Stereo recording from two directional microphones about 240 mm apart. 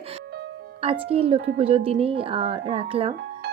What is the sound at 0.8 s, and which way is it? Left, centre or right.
Speech, right.